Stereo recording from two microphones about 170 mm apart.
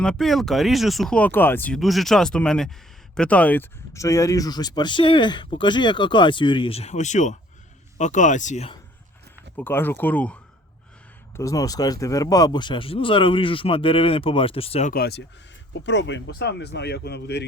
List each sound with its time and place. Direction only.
0.0 s speech: 5° left (ahead or behind); by 8.7 s 45° left (ahead or behind)
9.6 s speech: 10° left (ahead or behind)
11.3 s speech: 20° left (ahead or behind); by 14.8 s 35° left (ahead or behind)
14.8 s speech: 65° left (ahead or behind)
15.8 s speech: 90° left